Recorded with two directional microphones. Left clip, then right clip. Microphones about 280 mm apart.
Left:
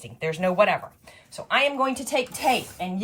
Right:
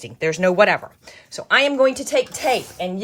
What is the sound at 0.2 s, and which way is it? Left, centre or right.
Speech, centre.